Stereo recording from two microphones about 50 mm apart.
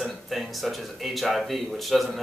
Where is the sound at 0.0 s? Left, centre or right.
Centre.